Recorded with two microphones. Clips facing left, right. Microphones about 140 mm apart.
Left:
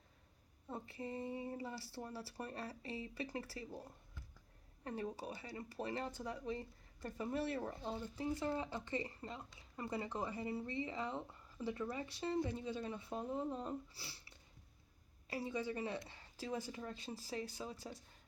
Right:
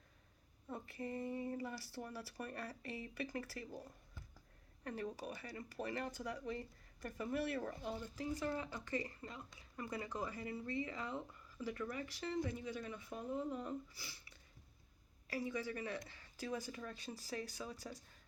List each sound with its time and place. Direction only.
0.7 s speech: 25° left (ahead or behind)